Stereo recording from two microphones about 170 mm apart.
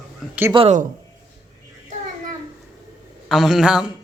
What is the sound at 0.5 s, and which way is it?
Speech, 35° right (ahead or behind).